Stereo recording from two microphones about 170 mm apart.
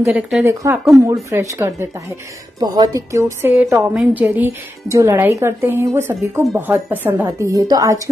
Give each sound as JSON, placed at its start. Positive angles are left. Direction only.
{"t": 0.1, "sound": "a woman's voice", "side_deg": -10}